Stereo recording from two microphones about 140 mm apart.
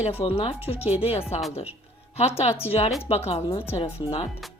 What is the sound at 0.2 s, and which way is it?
Speech, 45° left (ahead or behind).